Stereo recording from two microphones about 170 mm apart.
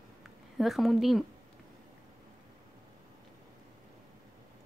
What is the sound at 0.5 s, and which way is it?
Speech, centre (ahead or behind).